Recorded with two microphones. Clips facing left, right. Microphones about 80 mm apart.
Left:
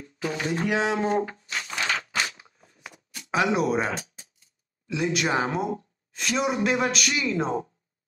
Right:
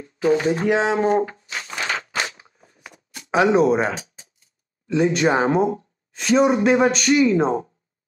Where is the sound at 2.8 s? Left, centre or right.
Centre.